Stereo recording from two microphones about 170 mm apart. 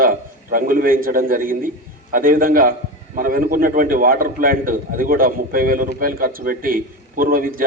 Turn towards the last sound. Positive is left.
turn(degrees=-55)  # may be behind; listen again after turning